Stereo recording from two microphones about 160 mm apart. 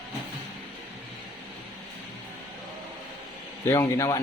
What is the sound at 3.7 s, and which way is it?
Mantra, 20° left (ahead or behind).